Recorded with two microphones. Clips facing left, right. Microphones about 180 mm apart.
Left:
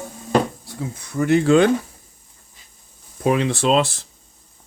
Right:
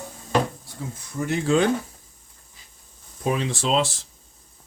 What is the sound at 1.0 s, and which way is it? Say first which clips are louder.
Speech: left 9 dB; 70° left (ahead or behind).